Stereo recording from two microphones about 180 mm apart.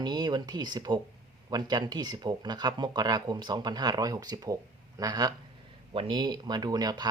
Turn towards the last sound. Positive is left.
turn(degrees=-20)  # may be behind; listen again after turning